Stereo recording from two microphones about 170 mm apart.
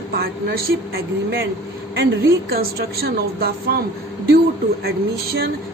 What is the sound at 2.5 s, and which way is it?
Speech, 65° right (ahead or behind).